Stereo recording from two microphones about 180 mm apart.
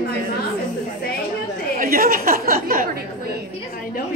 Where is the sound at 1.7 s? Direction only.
55° right (ahead or behind).